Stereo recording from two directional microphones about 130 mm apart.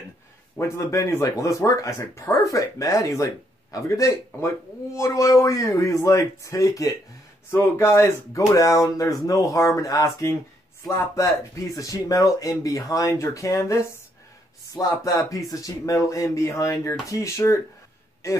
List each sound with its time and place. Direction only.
0.6 s speech: 25° left (ahead or behind)